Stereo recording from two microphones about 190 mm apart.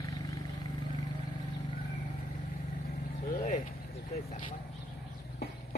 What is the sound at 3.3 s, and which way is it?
Vehicle, 40° left (ahead or behind).